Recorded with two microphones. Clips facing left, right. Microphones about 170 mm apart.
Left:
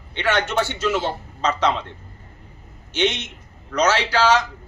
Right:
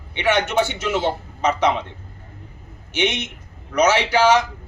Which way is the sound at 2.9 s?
15° right (ahead or behind).